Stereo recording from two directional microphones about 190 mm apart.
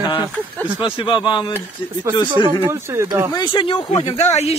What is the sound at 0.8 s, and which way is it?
Speech, 25° left (ahead or behind).